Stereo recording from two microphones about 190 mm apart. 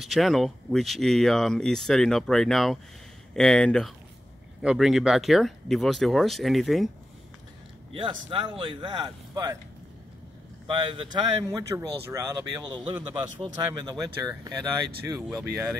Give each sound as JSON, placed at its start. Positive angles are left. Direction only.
{"t": 0.0, "sound": "speech", "side_deg": 0}
{"t": 7.9, "sound": "speech", "side_deg": -25}
{"t": 10.7, "sound": "speech", "side_deg": -25}